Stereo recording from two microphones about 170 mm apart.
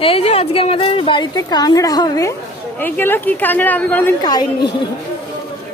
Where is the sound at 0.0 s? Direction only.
35° left (ahead or behind); by 4.0 s 10° left (ahead or behind).